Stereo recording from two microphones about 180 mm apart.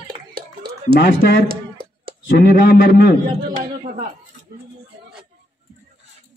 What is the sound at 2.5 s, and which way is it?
Speech, 55° left (ahead or behind).